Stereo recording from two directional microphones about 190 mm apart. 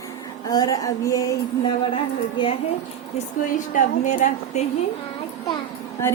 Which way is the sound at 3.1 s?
40° left (ahead or behind).